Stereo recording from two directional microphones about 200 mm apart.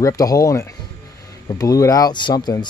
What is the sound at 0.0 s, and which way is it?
Speech, 15° left (ahead or behind).